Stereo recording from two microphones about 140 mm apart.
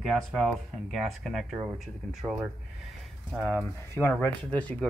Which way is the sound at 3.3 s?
Centre (ahead or behind).